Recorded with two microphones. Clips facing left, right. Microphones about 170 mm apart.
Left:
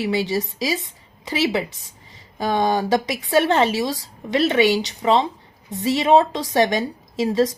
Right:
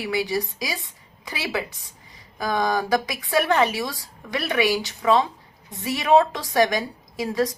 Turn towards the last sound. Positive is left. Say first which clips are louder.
# left 5 dB
turn(degrees=25)  # may be behind; listen again after turning